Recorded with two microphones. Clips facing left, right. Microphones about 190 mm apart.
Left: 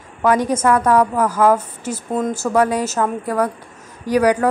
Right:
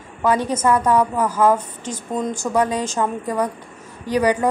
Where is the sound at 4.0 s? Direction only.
10° left (ahead or behind).